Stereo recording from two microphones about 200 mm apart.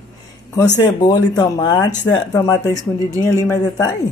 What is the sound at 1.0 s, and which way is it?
A man's voice, 20° left (ahead or behind).